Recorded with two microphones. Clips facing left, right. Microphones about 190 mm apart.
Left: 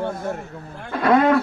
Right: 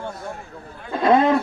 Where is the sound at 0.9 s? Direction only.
25° right (ahead or behind).